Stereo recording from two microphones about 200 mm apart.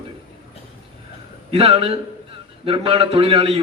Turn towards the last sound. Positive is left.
turn(degrees=-25)  # may be behind; listen again after turning